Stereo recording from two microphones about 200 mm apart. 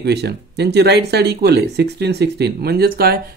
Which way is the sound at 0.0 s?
55° right (ahead or behind).